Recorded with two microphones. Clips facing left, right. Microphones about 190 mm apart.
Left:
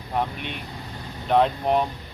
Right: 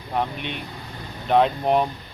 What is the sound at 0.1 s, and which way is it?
Speech, centre (ahead or behind).